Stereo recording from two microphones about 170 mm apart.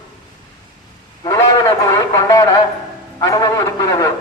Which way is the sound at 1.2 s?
20° left (ahead or behind).